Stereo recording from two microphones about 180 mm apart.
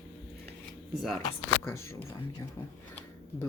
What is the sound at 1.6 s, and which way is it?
Speech, 15° left (ahead or behind).